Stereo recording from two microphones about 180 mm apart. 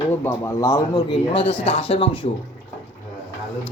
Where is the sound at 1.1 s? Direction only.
30° left (ahead or behind).